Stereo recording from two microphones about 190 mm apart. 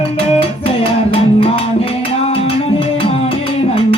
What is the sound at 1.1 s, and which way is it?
Music, 30° left (ahead or behind).